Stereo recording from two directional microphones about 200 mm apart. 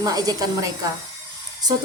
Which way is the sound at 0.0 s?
20° right (ahead or behind).